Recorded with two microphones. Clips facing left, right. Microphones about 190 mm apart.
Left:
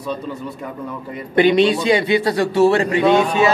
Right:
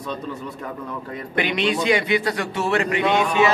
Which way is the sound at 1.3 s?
35° left (ahead or behind).